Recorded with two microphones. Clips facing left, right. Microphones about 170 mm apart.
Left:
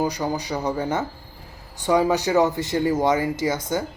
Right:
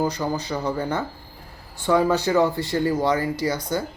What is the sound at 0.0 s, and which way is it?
Speech, 15° left (ahead or behind).